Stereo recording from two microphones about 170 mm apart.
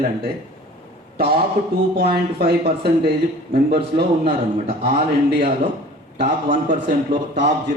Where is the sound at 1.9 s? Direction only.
65° right (ahead or behind).